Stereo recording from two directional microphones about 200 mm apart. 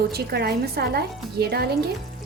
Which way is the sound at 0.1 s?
50° right (ahead or behind).